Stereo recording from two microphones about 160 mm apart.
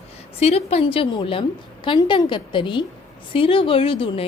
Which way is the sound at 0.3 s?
40° left (ahead or behind).